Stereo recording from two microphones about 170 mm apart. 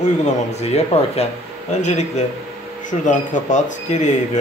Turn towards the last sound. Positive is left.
turn(degrees=45)  # may be behind; listen again after turning